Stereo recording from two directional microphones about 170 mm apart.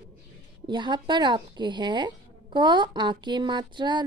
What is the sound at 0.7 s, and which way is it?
A woman's voice, 25° right (ahead or behind).